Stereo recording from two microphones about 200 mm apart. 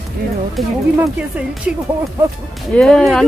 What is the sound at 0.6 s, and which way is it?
Speech, centre (ahead or behind).